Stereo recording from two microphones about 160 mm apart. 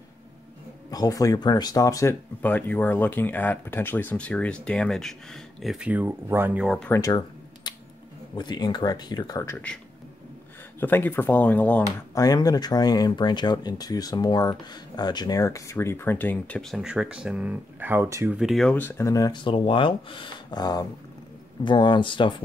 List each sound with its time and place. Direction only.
0.8 s speech: 20° left (ahead or behind)
2.4 s speech: 10° left (ahead or behind); by 6.8 s 5° right (ahead or behind)
6.9 s a sound: 20° left (ahead or behind)
8.4 s speech: 25° left (ahead or behind)
10.8 s speech: 15° left (ahead or behind)
12.2 s speech: 25° left (ahead or behind); by 18.4 s 15° right (ahead or behind)
18.4 s speech: centre (ahead or behind)
18.8 s speech: 15° left (ahead or behind); by 22.3 s 30° left (ahead or behind)